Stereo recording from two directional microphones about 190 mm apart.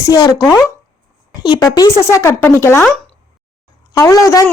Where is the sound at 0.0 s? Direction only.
20° left (ahead or behind).